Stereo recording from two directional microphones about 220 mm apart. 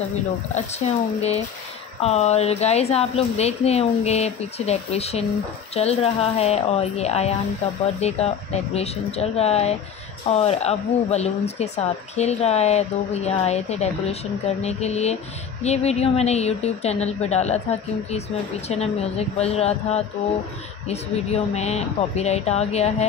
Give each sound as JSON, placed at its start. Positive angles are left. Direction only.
{"t": 0.6, "sound": "speech", "side_deg": 30}
{"t": 18.7, "sound": "speech", "side_deg": 30}